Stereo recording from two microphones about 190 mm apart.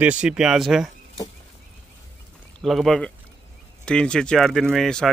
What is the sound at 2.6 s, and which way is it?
Speech, centre (ahead or behind).